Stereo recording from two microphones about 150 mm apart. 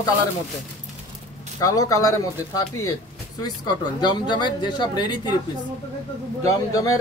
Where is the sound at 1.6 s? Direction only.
20° left (ahead or behind).